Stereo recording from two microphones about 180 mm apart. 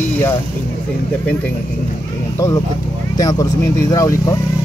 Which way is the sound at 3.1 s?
20° left (ahead or behind).